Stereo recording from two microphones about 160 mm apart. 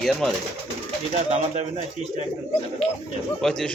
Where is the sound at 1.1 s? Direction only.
40° right (ahead or behind).